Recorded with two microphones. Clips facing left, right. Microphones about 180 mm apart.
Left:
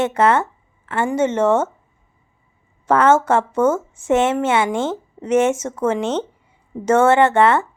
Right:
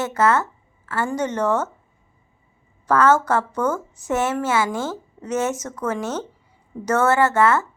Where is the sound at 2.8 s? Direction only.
25° left (ahead or behind).